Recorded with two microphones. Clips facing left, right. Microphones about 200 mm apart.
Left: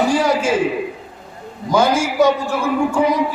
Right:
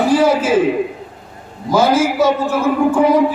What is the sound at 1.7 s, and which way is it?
Speech, 5° right (ahead or behind).